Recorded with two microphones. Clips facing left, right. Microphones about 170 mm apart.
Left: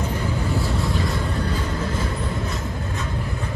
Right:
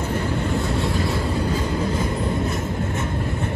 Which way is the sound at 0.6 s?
Centre (ahead or behind).